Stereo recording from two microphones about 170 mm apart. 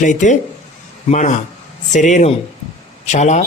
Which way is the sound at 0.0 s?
45° left (ahead or behind).